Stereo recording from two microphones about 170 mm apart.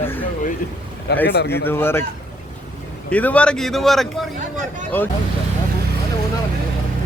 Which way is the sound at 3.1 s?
10° left (ahead or behind).